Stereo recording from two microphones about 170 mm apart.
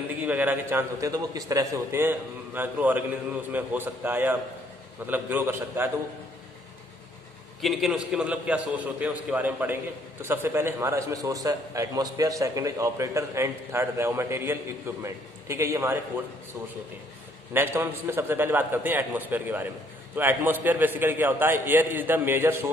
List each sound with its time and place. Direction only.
0.2 s a man's voice: 10° right (ahead or behind)
7.6 s a man's voice: centre (ahead or behind)
17.5 s a man's voice: 15° right (ahead or behind)